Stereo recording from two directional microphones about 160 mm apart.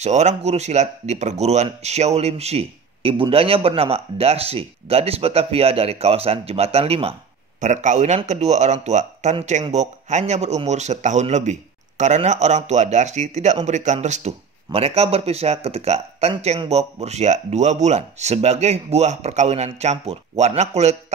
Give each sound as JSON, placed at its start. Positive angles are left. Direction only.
{"t": 0.0, "sound": "a man's voice", "side_deg": -45}
{"t": 7.6, "sound": "speech", "side_deg": -50}